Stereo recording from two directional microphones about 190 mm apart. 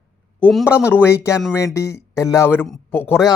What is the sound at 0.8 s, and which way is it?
Speech, 10° left (ahead or behind).